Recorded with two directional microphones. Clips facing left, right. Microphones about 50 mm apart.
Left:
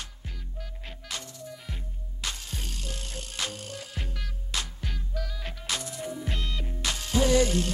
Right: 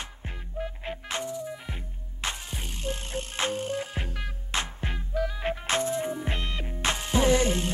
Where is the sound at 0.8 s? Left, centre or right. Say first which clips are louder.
Right 5 dB; right.